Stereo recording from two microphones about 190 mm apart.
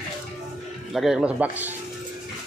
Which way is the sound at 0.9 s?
Centre (ahead or behind).